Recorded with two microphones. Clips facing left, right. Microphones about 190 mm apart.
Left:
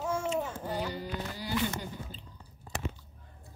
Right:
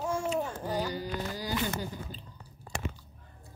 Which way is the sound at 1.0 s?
40° right (ahead or behind).